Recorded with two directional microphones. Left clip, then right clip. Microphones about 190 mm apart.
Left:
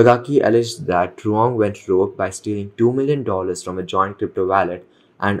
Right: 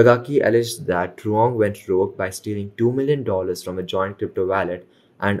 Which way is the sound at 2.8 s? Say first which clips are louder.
Left 2 dB; centre (ahead or behind).